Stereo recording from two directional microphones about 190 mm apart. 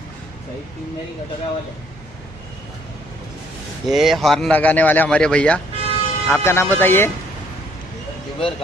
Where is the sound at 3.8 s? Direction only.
Centre (ahead or behind).